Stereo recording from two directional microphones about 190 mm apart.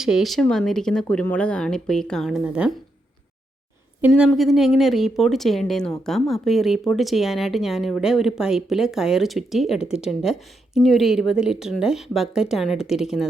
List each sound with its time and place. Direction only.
0.0 s speech: centre (ahead or behind)
4.0 s speech: 5° right (ahead or behind)